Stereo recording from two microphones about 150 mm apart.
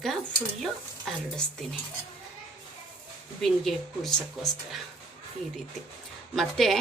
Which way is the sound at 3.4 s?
Centre (ahead or behind).